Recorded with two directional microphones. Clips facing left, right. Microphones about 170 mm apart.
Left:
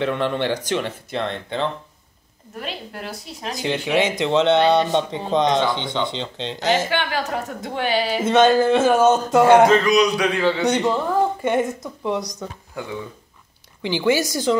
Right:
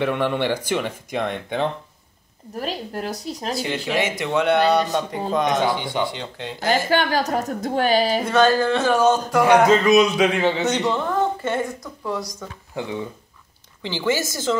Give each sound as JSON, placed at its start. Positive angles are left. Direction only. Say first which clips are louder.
{"t": 0.0, "sound": "speech", "louder": "even", "side_deg": -10}
{"t": 2.6, "sound": "a woman's voice", "louder": "right 4 dB", "side_deg": -40}
{"t": 3.5, "sound": "speech", "louder": "left 4 dB", "side_deg": 15}
{"t": 6.9, "sound": "a woman's voice", "louder": "right 4 dB", "side_deg": -40}
{"t": 8.3, "sound": "speech", "louder": "left 5 dB", "side_deg": 20}
{"t": 9.7, "sound": "speech", "louder": "right 1 dB", "side_deg": -25}
{"t": 10.6, "sound": "speech", "louder": "left 2 dB", "side_deg": 10}
{"t": 11.5, "sound": "speech", "louder": "left 4 dB", "side_deg": 20}
{"t": 13.8, "sound": "a woman's voice", "louder": "left 3 dB", "side_deg": 15}